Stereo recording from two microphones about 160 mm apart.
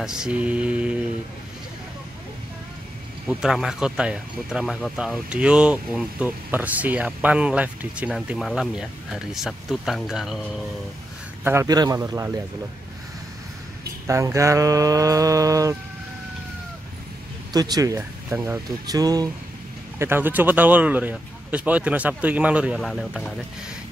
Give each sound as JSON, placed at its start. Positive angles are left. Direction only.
{"t": 0.0, "sound": "speech", "side_deg": -5}
{"t": 3.3, "sound": "speech", "side_deg": 0}
{"t": 11.4, "sound": "speech", "side_deg": -20}
{"t": 14.0, "sound": "speech", "side_deg": -20}
{"t": 17.5, "sound": "speech", "side_deg": -25}
{"t": 20.0, "sound": "speech", "side_deg": -15}